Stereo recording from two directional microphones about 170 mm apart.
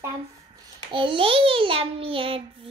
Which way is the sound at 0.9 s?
30° right (ahead or behind).